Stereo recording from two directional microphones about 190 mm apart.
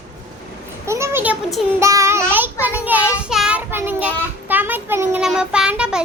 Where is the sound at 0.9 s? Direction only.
15° right (ahead or behind).